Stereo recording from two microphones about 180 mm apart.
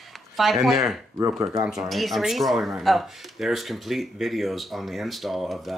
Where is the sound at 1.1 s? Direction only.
20° right (ahead or behind).